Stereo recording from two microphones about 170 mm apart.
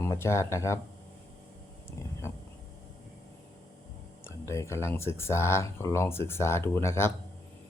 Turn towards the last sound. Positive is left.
turn(degrees=15)  # may be behind; listen again after turning